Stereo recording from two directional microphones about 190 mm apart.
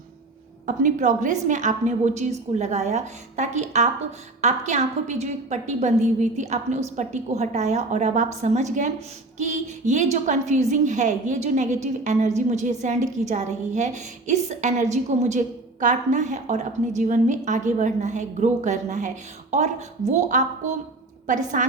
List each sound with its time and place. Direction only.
0.8 s a woman's voice: 40° right (ahead or behind)